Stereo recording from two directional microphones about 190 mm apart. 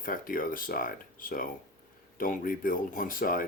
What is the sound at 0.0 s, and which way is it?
Speech, 45° left (ahead or behind).